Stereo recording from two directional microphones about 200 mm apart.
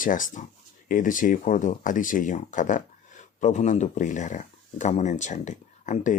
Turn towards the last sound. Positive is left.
turn(degrees=40)  # may be behind; listen again after turning